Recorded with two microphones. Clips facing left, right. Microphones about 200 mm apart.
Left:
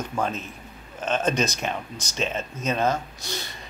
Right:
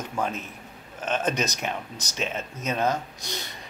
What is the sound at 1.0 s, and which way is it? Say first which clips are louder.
Speech: left 2 dB; 15° right (ahead or behind).